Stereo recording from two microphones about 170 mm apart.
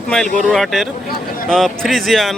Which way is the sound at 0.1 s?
Centre (ahead or behind).